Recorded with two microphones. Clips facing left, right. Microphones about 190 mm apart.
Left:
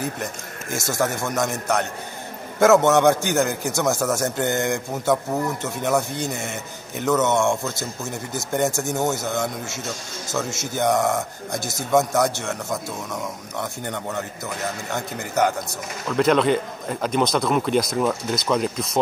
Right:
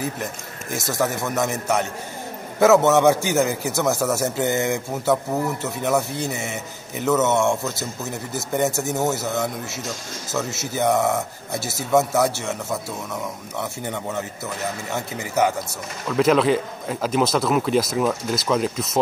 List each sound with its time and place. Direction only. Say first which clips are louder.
0.0 s a man's voice: even; centre (ahead or behind)